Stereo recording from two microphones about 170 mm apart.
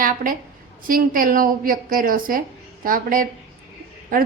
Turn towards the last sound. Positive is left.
turn(degrees=-55)  # may be behind; listen again after turning